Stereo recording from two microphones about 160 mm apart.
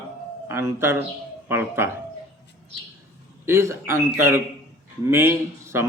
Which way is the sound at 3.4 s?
15° right (ahead or behind).